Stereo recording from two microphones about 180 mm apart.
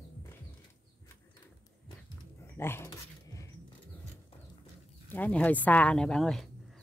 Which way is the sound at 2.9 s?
20° left (ahead or behind).